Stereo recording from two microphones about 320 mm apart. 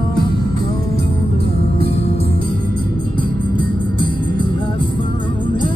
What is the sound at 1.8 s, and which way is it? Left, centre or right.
Music, centre.